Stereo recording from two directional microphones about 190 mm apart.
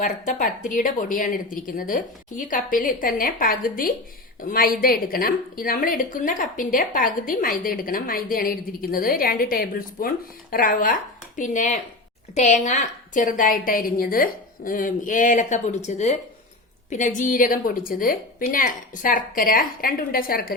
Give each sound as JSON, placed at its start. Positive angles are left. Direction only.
{"t": 0.0, "sound": "a woman's voice", "side_deg": 45}